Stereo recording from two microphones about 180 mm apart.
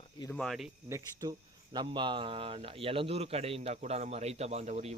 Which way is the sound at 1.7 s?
25° right (ahead or behind).